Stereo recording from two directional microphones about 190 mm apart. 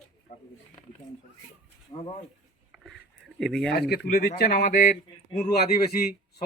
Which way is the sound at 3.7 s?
60° left (ahead or behind).